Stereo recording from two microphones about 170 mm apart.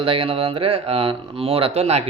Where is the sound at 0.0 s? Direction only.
30° right (ahead or behind).